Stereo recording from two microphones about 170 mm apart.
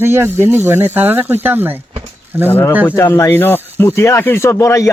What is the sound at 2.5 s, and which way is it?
A man's voice, 15° left (ahead or behind).